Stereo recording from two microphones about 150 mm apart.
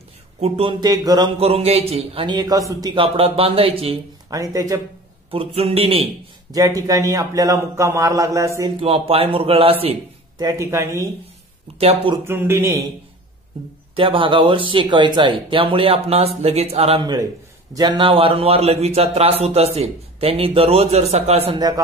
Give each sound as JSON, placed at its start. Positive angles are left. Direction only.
{"t": 0.4, "sound": "a man's voice", "side_deg": -35}
{"t": 1.4, "sound": "a man's voice", "side_deg": -40}
{"t": 4.3, "sound": "a man's voice", "side_deg": -25}
{"t": 5.3, "sound": "a man's voice", "side_deg": -40}
{"t": 6.5, "sound": "a man's voice", "side_deg": -25}
{"t": 8.8, "sound": "a man's voice", "side_deg": -40}
{"t": 10.3, "sound": "a man's voice", "side_deg": -25}
{"t": 11.8, "sound": "a man's voice", "side_deg": -40}
{"t": 12.3, "sound": "a man's voice", "side_deg": -15}
{"t": 13.9, "sound": "a man's voice", "side_deg": -35}
{"t": 17.0, "sound": "a man's voice", "side_deg": -25}
{"t": 21.5, "sound": "a man's voice", "side_deg": -25}